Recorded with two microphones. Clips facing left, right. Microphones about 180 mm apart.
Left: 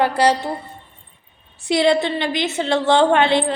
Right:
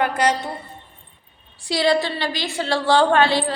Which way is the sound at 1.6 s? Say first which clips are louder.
Left 3 dB; 20° left (ahead or behind).